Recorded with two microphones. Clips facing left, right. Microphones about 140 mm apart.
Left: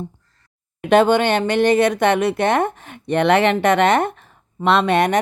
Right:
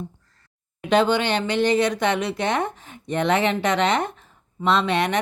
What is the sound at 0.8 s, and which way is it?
A woman's voice, 55° left (ahead or behind).